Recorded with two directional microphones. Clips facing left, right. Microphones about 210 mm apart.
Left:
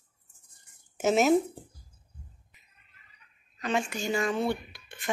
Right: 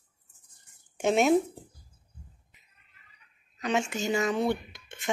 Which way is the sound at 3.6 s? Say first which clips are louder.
Right 1 dB; 20° right (ahead or behind).